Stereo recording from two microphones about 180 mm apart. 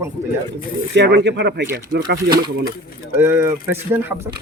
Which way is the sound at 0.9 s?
75° right (ahead or behind).